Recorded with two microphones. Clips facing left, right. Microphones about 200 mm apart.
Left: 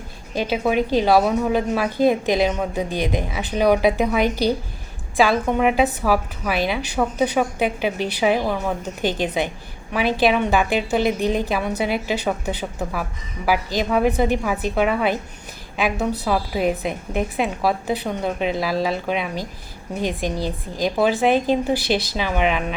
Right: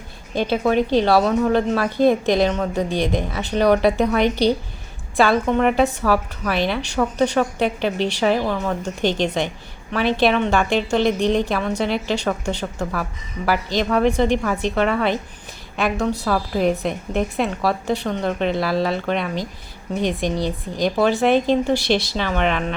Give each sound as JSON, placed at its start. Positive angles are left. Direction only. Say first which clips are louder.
{"t": 0.3, "sound": "a woman's voice", "louder": "right 2 dB", "side_deg": 5}